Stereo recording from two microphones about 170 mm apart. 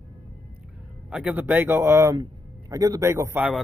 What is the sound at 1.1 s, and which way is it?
Speech, 10° right (ahead or behind).